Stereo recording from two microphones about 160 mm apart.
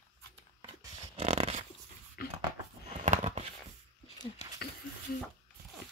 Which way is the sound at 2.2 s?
70° left (ahead or behind).